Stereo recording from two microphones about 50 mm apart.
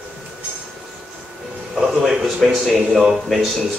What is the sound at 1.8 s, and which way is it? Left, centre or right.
A man's voice, centre.